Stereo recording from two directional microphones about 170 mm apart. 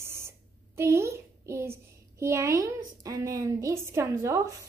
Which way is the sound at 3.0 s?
20° right (ahead or behind).